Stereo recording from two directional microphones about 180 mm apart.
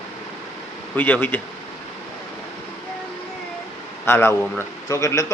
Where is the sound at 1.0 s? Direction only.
10° left (ahead or behind).